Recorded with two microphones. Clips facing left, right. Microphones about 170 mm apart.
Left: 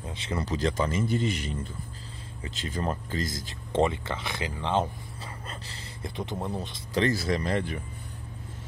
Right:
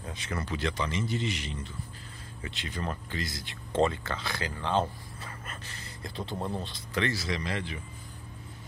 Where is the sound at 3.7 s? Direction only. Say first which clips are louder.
Left 1 dB; 20° left (ahead or behind).